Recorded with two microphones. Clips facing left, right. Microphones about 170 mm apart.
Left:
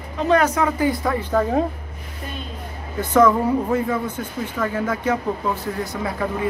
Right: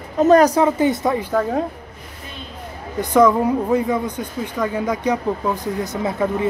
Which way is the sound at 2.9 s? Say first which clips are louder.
Right 2 dB; 15° right (ahead or behind).